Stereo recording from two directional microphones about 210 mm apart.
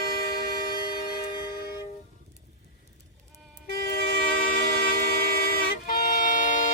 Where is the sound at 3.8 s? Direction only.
45° left (ahead or behind).